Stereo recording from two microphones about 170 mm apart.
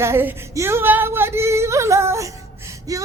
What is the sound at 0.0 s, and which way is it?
A woman's voice, 15° right (ahead or behind).